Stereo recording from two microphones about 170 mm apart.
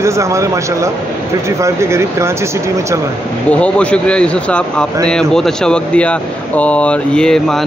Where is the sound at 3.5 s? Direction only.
5° left (ahead or behind).